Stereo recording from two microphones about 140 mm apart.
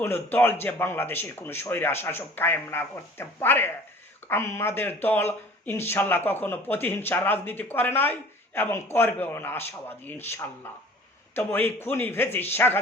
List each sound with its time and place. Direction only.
0.0 s speech: 15° left (ahead or behind)